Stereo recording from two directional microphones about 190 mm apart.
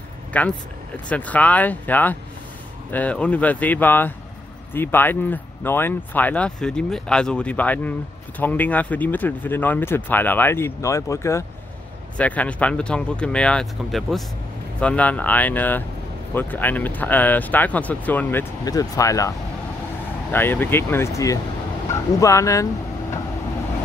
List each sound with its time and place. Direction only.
0.3 s speech: 10° left (ahead or behind)